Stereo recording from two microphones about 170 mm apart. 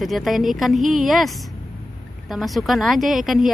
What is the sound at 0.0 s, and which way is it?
Speech, centre (ahead or behind).